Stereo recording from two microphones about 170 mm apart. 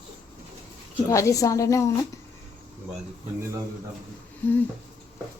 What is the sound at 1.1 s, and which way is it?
Speech, 20° left (ahead or behind).